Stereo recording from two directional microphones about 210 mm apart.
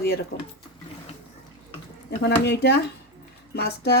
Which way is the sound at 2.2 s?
50° left (ahead or behind).